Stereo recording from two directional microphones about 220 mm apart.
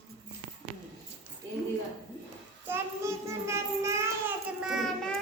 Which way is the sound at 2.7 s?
10° right (ahead or behind).